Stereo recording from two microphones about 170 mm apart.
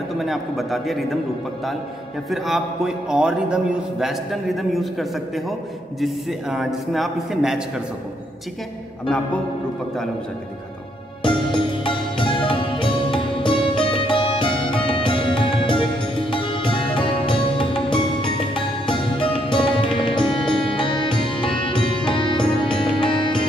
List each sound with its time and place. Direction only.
0.2 s a man's voice: centre (ahead or behind)
2.2 s a man's voice: centre (ahead or behind)
11.2 s music: 30° left (ahead or behind)